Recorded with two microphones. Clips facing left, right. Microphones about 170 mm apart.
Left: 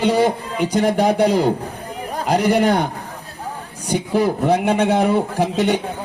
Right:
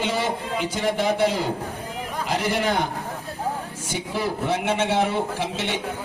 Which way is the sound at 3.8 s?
40° left (ahead or behind).